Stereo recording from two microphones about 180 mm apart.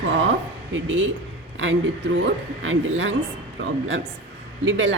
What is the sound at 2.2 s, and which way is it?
A woman's voice, 90° right.